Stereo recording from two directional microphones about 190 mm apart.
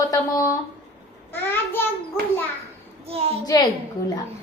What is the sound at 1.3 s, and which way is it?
Child singing, 10° left (ahead or behind).